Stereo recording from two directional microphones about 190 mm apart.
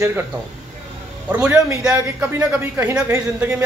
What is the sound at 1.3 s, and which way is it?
Speech, 10° right (ahead or behind).